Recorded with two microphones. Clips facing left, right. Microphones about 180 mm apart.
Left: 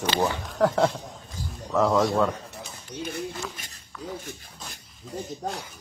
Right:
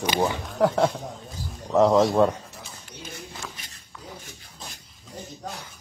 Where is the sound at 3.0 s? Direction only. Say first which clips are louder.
Left 9 dB; 60° left (ahead or behind).